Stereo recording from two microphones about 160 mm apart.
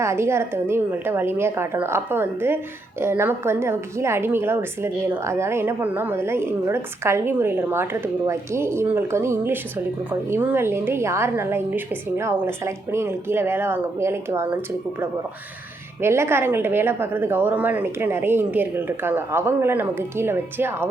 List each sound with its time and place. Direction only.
0.0 s a woman's voice: 15° right (ahead or behind)
16.0 s a woman's voice: 15° right (ahead or behind)